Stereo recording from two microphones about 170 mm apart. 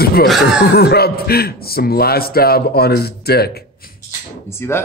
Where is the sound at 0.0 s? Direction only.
65° left (ahead or behind).